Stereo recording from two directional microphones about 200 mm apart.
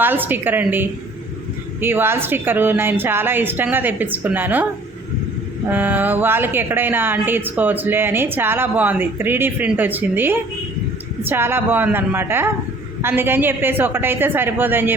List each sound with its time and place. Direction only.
0.0 s speech: 10° right (ahead or behind)
5.7 s speech: 10° right (ahead or behind)